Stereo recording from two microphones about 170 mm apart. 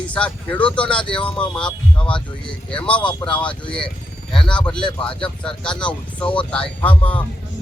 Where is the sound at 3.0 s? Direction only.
30° left (ahead or behind).